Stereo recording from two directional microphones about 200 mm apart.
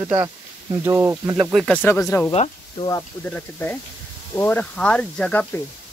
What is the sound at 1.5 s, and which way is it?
Speech, 5° left (ahead or behind).